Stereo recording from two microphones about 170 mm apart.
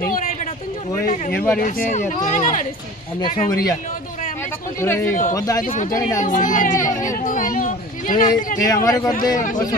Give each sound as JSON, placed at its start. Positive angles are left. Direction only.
{"t": 0.0, "sound": "a sound", "side_deg": 55}
{"t": 1.3, "sound": "speech", "side_deg": 10}
{"t": 1.6, "sound": "speech", "side_deg": 45}
{"t": 3.4, "sound": "speech", "side_deg": 20}
{"t": 4.8, "sound": "speech", "side_deg": 15}
{"t": 5.7, "sound": "speech", "side_deg": 50}
{"t": 7.2, "sound": "a sound", "side_deg": 50}
{"t": 8.5, "sound": "speech", "side_deg": 20}